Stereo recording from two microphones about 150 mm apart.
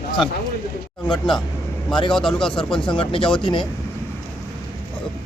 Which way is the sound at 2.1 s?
5° left (ahead or behind).